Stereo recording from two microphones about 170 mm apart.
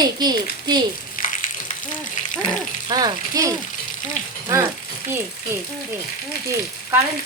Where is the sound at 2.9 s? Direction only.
25° right (ahead or behind).